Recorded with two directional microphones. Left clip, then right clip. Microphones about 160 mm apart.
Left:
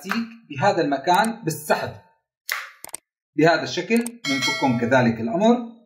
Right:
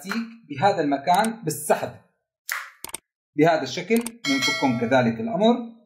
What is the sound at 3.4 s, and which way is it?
Speech, 35° right (ahead or behind).